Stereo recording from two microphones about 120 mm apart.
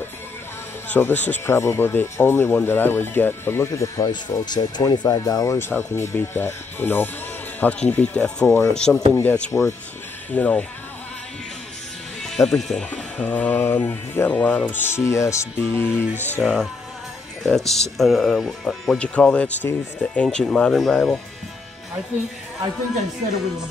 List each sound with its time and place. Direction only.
0.9 s speech: 15° left (ahead or behind)
10.3 s speech: 10° left (ahead or behind)
12.2 s speech: 5° left (ahead or behind); by 16.1 s 20° left (ahead or behind)
16.3 s speech: 5° left (ahead or behind)